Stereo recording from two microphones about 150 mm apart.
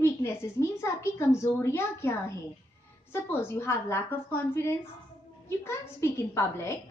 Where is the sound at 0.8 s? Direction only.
15° left (ahead or behind).